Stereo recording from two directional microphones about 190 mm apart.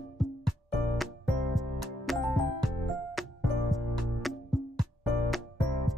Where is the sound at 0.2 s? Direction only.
Centre (ahead or behind).